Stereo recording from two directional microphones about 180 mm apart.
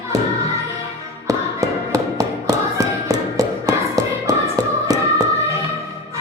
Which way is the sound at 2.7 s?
20° right (ahead or behind).